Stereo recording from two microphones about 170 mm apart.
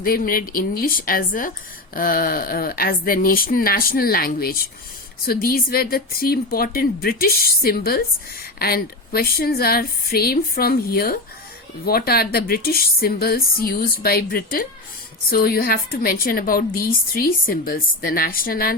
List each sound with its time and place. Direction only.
0.0 s a woman's voice: 55° left (ahead or behind)